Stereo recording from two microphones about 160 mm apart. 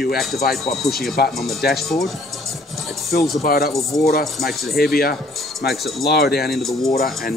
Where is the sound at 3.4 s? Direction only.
70° left (ahead or behind).